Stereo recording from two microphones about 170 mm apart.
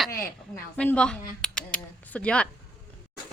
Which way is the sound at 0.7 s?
10° left (ahead or behind).